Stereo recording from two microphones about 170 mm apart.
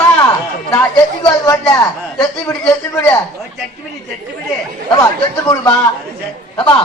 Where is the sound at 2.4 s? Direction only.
15° left (ahead or behind).